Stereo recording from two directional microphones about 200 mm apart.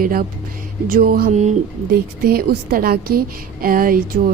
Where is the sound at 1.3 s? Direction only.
35° right (ahead or behind).